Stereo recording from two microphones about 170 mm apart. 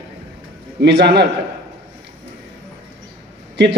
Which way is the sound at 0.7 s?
80° right.